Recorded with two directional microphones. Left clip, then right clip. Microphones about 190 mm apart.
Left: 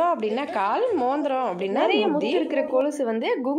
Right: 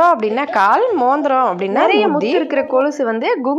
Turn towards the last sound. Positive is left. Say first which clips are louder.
# right 8 dB
turn(degrees=-10)  # may be behind; listen again after turning